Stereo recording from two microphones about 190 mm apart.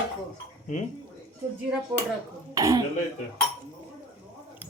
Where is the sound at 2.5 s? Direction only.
20° right (ahead or behind).